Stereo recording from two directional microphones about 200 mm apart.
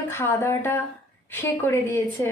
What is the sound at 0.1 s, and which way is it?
A woman's voice, 10° left (ahead or behind).